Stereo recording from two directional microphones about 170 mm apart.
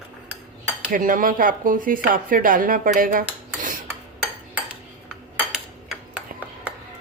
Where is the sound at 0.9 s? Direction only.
55° right (ahead or behind).